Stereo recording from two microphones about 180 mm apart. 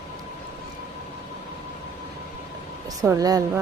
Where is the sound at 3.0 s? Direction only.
20° right (ahead or behind).